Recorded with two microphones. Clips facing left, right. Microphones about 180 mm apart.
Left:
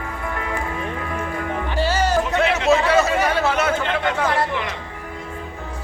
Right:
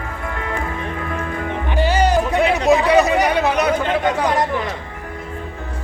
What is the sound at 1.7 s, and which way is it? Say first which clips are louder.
Music: right 3 dB; 15° right (ahead or behind).